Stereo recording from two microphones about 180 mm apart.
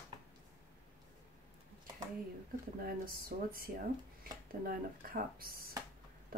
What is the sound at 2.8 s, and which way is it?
Speech, 55° right (ahead or behind).